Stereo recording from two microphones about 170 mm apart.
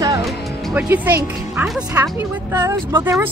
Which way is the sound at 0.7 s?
10° right (ahead or behind).